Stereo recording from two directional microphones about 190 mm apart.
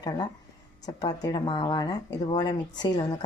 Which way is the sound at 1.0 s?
25° left (ahead or behind).